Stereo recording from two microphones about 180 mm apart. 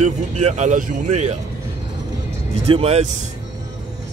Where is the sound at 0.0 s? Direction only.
40° right (ahead or behind).